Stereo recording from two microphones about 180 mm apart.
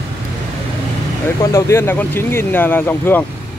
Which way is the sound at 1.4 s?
15° left (ahead or behind).